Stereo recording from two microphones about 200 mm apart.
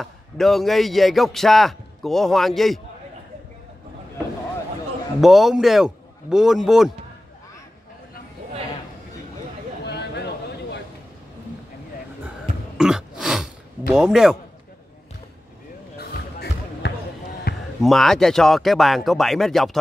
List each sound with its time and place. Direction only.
0.0 s a man's voice: centre (ahead or behind)
5.2 s a man's voice: centre (ahead or behind)
9.8 s a sound: 55° left (ahead or behind)
12.7 s throat clearing: 5° right (ahead or behind)
16.0 s basketball bounce: 50° left (ahead or behind)
17.8 s a man's voice: centre (ahead or behind)